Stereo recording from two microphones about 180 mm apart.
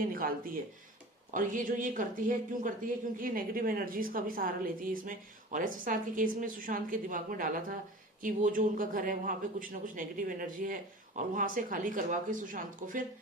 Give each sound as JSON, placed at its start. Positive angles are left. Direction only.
{"t": 0.0, "sound": "speech", "side_deg": -55}